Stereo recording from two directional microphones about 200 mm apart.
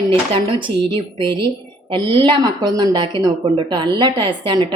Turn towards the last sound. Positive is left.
turn(degrees=-25)  # may be behind; listen again after turning